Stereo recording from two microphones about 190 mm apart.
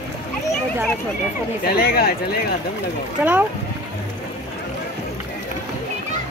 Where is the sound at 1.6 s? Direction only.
55° left (ahead or behind).